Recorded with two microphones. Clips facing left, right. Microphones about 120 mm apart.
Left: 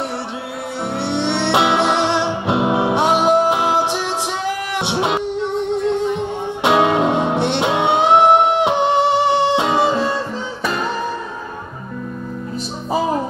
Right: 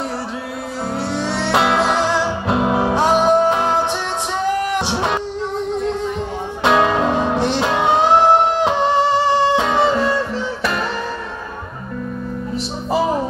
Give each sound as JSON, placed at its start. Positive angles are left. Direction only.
{"t": 0.9, "sound": "music", "side_deg": 25}
{"t": 6.6, "sound": "music", "side_deg": 20}